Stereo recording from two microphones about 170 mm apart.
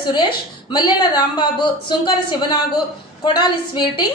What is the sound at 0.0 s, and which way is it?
A woman's voice, 25° left (ahead or behind).